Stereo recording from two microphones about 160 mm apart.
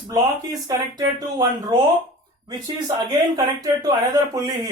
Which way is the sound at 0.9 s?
25° right (ahead or behind).